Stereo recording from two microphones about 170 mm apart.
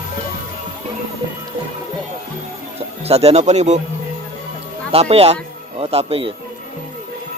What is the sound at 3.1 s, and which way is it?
Speech, 40° right (ahead or behind).